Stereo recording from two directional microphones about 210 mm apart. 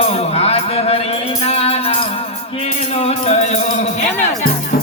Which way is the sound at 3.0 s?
30° left (ahead or behind).